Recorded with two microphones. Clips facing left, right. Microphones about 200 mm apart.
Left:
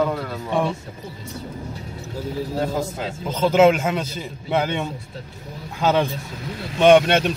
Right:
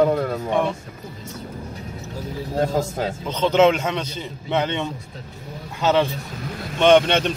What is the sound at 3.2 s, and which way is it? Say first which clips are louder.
Speech: left 1 dB; 10° left (ahead or behind).